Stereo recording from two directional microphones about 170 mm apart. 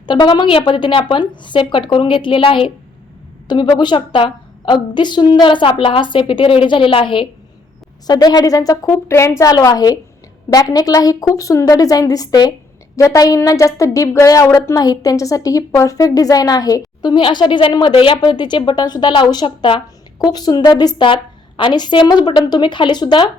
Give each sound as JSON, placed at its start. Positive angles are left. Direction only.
{"t": 0.0, "sound": "a woman's voice", "side_deg": 25}